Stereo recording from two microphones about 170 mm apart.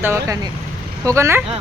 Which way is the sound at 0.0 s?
15° right (ahead or behind).